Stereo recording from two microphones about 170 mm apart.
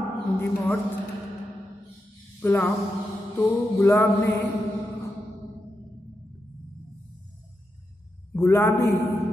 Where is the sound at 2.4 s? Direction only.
10° left (ahead or behind).